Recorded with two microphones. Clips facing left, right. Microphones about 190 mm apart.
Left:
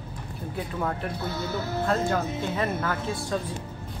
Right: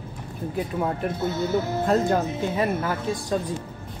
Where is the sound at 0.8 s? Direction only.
20° right (ahead or behind).